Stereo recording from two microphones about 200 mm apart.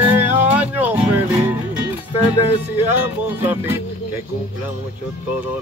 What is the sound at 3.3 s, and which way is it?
Music, 10° right (ahead or behind).